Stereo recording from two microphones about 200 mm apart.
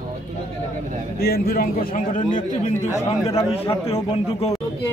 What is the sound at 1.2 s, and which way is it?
A man's voice, 50° left (ahead or behind).